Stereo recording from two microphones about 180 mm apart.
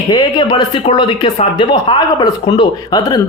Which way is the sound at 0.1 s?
25° left (ahead or behind).